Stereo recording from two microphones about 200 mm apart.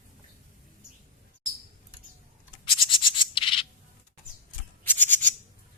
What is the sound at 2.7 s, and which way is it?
Bird, 25° left (ahead or behind).